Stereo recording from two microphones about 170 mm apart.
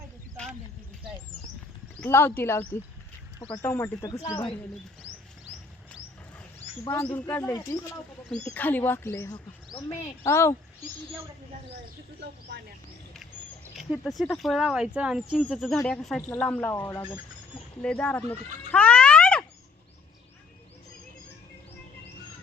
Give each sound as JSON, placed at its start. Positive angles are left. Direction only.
{"t": 2.0, "sound": "speech", "side_deg": 15}
{"t": 6.8, "sound": "speech", "side_deg": 15}
{"t": 13.7, "sound": "speech", "side_deg": 0}
{"t": 17.8, "sound": "a sound", "side_deg": 10}